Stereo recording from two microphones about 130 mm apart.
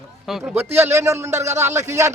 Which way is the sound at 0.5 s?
20° right (ahead or behind).